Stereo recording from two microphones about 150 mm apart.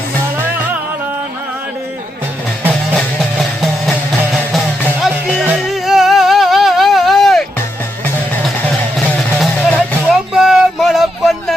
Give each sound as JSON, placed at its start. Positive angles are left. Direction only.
{"t": 4.9, "sound": "music", "side_deg": -5}
{"t": 9.0, "sound": "music", "side_deg": 5}